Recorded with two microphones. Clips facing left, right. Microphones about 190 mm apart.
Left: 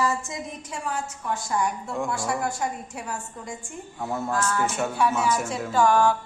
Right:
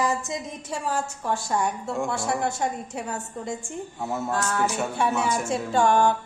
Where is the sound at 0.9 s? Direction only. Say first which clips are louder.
Right 2 dB; 30° right (ahead or behind).